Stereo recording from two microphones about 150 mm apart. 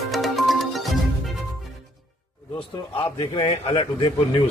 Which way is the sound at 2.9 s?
35° left (ahead or behind).